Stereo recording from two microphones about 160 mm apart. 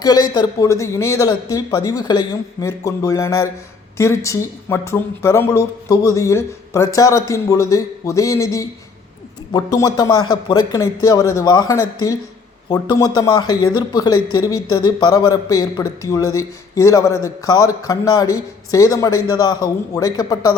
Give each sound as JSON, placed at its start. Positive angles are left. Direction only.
{"t": 0.0, "sound": "speech", "side_deg": 25}